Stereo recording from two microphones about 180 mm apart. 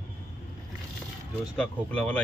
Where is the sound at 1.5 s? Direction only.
5° left (ahead or behind).